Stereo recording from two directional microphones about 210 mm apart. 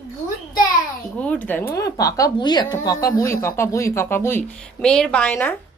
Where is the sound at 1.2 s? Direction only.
5° left (ahead or behind).